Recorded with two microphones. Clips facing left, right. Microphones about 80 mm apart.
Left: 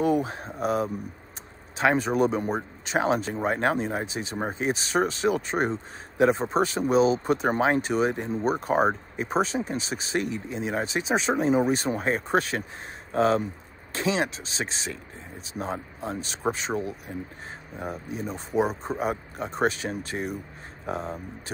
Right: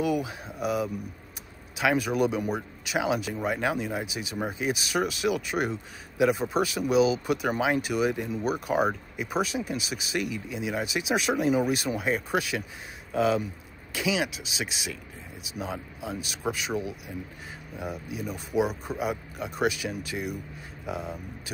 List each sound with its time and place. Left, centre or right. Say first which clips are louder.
0.0 s speech: left 3 dB; left